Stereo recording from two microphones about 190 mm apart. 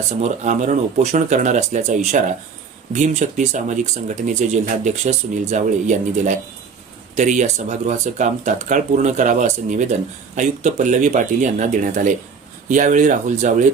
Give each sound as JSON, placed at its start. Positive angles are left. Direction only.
{"t": 0.2, "sound": "speech", "side_deg": -40}